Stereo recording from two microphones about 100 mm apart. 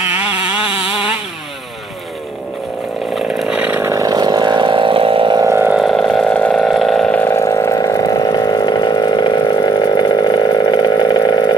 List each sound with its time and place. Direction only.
0.4 s a sound: 65° left (ahead or behind)
3.2 s chainsaw: 5° right (ahead or behind)
3.9 s vehicle: 40° right (ahead or behind); by 5.4 s 60° right (ahead or behind)
5.4 s vehicle: 30° right (ahead or behind)
5.8 s vehicle: centre (ahead or behind)
6.6 s vehicle: centre (ahead or behind)
7.1 s vehicle: 15° left (ahead or behind)
7.3 s a sound: 30° left (ahead or behind)